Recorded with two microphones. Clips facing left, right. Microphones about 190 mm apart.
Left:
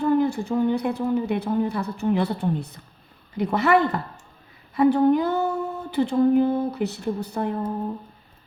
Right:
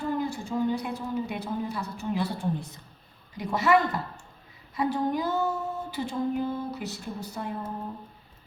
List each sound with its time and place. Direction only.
0.0 s a woman's voice: 60° left (ahead or behind)